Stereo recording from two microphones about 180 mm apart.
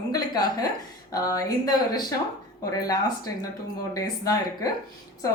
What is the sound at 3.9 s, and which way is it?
Speech, 20° left (ahead or behind).